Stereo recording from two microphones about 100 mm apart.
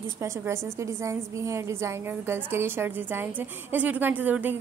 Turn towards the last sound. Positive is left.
turn(degrees=-15)  # may be behind; listen again after turning